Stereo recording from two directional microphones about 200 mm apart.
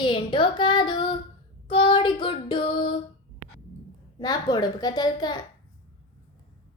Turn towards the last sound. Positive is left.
turn(degrees=20)  # may be behind; listen again after turning